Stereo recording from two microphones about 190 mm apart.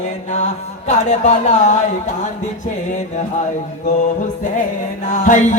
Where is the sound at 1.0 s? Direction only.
40° left (ahead or behind).